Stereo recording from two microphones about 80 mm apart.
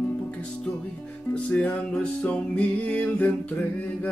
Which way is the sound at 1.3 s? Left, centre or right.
Centre.